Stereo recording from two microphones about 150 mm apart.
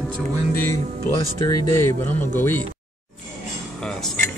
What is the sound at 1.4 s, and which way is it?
Speech, 20° left (ahead or behind).